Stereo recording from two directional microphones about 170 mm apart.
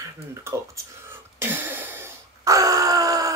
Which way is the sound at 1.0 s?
10° right (ahead or behind).